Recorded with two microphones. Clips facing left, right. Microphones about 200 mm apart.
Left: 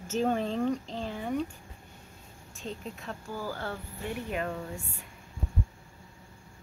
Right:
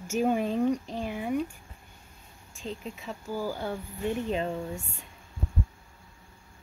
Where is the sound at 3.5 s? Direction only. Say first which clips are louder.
Right 3 dB; 15° right (ahead or behind).